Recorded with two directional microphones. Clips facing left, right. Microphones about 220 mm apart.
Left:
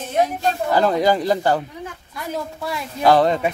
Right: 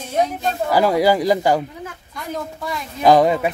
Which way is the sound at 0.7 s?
10° right (ahead or behind).